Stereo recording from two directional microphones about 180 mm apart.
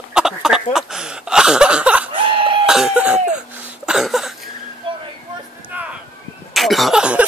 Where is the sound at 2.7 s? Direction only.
5° right (ahead or behind).